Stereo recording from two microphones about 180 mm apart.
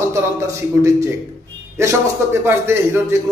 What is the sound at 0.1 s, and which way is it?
A man's voice, 15° right (ahead or behind).